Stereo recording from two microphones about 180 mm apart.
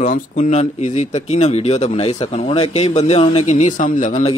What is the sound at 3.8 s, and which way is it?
Mantra, 45° left (ahead or behind).